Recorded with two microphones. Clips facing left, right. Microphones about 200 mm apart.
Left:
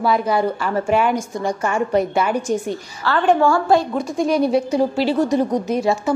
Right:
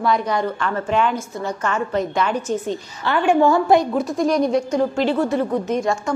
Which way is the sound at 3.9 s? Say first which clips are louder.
Even; centre (ahead or behind).